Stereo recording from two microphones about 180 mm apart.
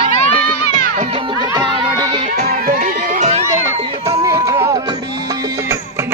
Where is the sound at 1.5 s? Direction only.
25° right (ahead or behind).